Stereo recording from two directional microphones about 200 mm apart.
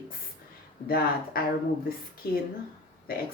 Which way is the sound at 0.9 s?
50° left (ahead or behind).